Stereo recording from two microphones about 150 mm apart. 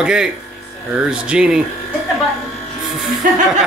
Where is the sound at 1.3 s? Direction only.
5° right (ahead or behind).